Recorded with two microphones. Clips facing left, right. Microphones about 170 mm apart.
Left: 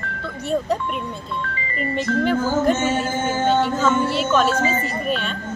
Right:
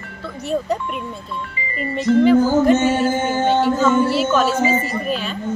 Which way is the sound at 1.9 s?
Centre (ahead or behind).